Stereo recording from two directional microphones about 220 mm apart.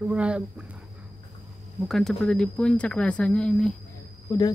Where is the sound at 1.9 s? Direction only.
Centre (ahead or behind).